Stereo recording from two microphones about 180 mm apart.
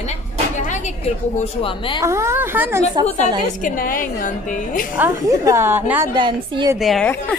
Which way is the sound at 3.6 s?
50° left (ahead or behind).